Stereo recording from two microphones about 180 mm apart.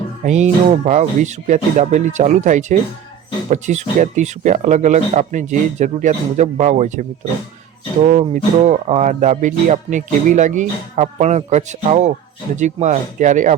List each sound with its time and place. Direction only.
0.3 s speech: 40° right (ahead or behind)
8.0 s speech: 40° right (ahead or behind)